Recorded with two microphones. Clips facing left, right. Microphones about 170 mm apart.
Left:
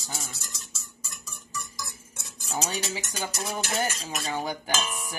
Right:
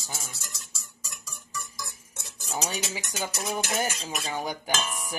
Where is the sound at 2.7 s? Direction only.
15° right (ahead or behind).